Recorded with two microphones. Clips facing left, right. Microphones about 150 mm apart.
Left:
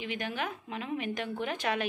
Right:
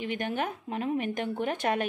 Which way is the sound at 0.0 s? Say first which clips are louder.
Right 4 dB; 45° right (ahead or behind).